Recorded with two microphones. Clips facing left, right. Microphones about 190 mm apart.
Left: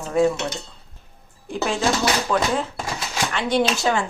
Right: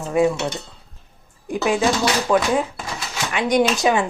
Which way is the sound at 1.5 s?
10° right (ahead or behind).